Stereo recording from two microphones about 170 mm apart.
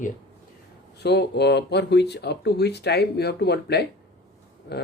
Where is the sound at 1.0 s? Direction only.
80° left.